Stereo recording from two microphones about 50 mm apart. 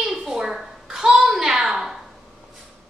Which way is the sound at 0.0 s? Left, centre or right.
Centre.